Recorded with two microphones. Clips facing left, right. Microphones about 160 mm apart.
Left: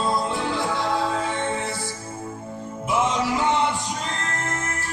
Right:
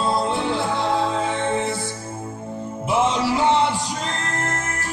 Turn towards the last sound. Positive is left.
turn(degrees=-30)  # may be behind; listen again after turning